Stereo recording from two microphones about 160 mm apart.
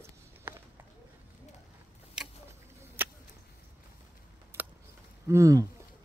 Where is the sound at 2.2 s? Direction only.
5° right (ahead or behind).